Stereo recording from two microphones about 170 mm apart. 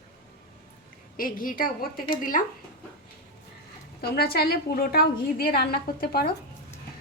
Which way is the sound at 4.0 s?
65° left (ahead or behind).